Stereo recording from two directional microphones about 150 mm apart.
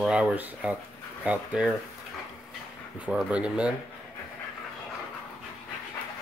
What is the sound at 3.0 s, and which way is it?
Speech, 5° right (ahead or behind).